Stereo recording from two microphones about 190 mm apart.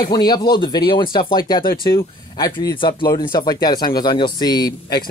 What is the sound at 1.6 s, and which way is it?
Speech, 50° left (ahead or behind).